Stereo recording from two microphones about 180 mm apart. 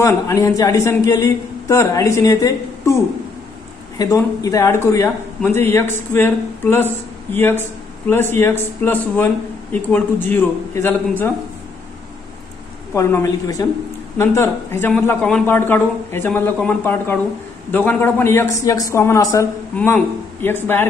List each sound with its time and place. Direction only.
0.0 s speech: 15° left (ahead or behind)
4.0 s speech: 20° left (ahead or behind)
12.9 s speech: 15° left (ahead or behind)